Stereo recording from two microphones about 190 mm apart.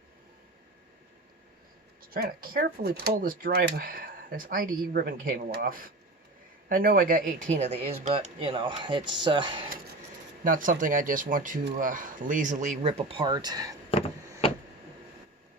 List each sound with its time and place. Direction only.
2.0 s speech: 50° right (ahead or behind)
7.6 s speech: 35° right (ahead or behind)
10.4 s speech: 45° right (ahead or behind)
12.9 s speech: 30° right (ahead or behind)